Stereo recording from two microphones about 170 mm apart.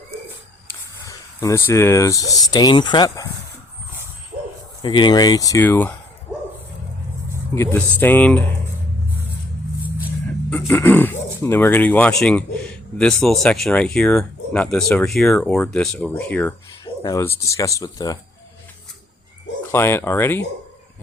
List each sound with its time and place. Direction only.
1.0 s speech: 20° left (ahead or behind)
4.3 s bow-wow: 35° right (ahead or behind)
4.8 s speech: 25° left (ahead or behind); by 5.9 s 10° left (ahead or behind)
7.5 s speech: 15° left (ahead or behind)
10.7 s speech: 10° left (ahead or behind)
16.8 s speech: 20° left (ahead or behind)
19.7 s speech: 15° left (ahead or behind)